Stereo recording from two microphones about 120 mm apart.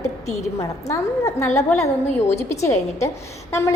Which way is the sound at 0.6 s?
25° left (ahead or behind).